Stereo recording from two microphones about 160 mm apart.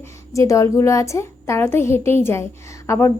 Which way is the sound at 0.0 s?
20° left (ahead or behind).